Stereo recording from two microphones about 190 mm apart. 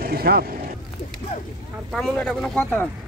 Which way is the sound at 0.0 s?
55° right (ahead or behind).